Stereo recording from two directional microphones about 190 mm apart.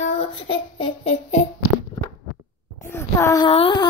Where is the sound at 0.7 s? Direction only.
30° left (ahead or behind).